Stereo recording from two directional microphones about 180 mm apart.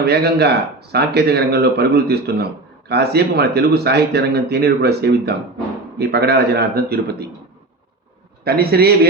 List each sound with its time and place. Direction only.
0.0 s speech: 65° right (ahead or behind)
8.4 s speech: 60° right (ahead or behind)